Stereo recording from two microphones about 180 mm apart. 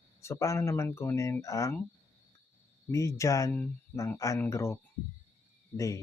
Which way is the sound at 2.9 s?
15° left (ahead or behind).